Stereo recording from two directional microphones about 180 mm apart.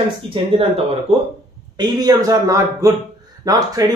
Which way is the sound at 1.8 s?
20° right (ahead or behind).